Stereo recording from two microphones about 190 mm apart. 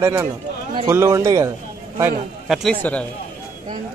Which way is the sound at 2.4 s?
Centre (ahead or behind).